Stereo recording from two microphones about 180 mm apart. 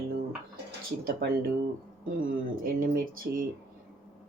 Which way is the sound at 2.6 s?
50° right (ahead or behind).